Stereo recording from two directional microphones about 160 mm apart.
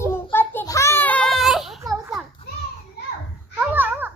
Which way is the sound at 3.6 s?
10° right (ahead or behind).